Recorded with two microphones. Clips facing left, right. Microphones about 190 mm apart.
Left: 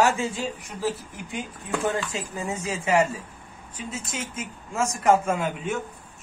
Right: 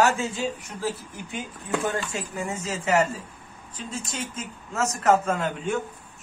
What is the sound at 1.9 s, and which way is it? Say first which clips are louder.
A man's voice: left 1 dB; 15° left (ahead or behind).